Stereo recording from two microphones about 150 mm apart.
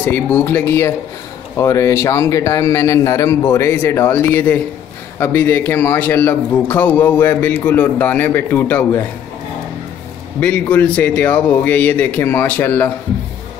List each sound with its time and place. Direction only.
0.0 s a man's voice: 10° left (ahead or behind)
10.4 s speech: 10° left (ahead or behind)